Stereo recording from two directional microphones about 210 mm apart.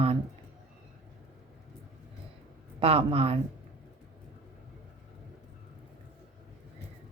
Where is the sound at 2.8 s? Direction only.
25° right (ahead or behind).